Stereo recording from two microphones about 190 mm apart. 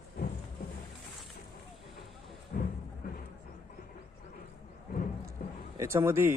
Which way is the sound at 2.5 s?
50° left (ahead or behind).